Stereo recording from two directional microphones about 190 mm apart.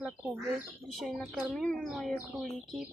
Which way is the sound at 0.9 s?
Centre (ahead or behind).